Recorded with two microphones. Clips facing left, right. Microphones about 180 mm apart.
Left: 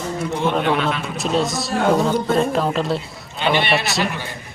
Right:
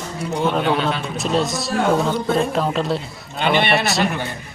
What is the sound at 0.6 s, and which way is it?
Speech, 35° right (ahead or behind).